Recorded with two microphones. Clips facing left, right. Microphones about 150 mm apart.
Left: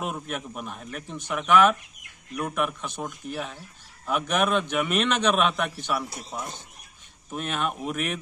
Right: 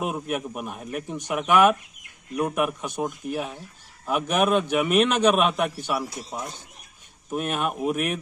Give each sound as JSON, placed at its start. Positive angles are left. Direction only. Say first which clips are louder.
{"t": 0.0, "sound": "speech", "louder": "right 4 dB", "side_deg": -10}
{"t": 4.1, "sound": "a man's voice", "louder": "right 3 dB", "side_deg": -5}
{"t": 7.2, "sound": "speech", "louder": "right 3 dB", "side_deg": -10}